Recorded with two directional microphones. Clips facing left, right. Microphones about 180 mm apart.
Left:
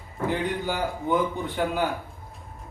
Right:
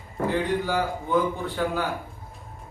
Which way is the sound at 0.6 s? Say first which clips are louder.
Even; 20° left (ahead or behind).